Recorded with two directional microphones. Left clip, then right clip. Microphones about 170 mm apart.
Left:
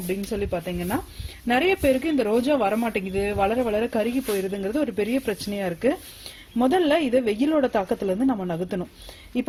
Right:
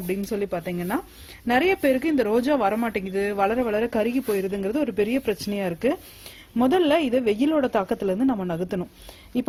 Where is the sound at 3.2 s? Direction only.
40° right (ahead or behind).